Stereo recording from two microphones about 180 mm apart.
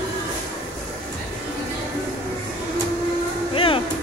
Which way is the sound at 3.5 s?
30° left (ahead or behind).